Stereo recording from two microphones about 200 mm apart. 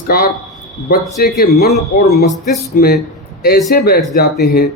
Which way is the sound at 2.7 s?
50° left (ahead or behind).